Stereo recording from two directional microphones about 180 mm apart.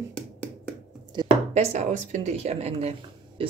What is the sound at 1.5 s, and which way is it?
A woman's voice, 40° right (ahead or behind).